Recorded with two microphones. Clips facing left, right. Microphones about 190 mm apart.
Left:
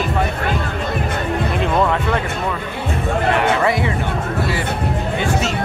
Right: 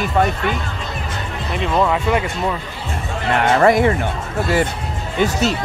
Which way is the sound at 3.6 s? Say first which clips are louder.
Right 5 dB; 50° right (ahead or behind).